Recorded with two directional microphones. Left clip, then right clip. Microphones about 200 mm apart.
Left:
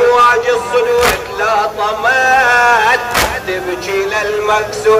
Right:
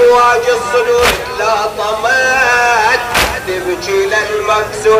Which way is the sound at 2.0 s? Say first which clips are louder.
Left 1 dB; 20° right (ahead or behind).